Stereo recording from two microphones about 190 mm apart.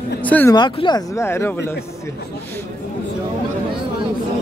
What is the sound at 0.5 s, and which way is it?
Speech, 25° left (ahead or behind).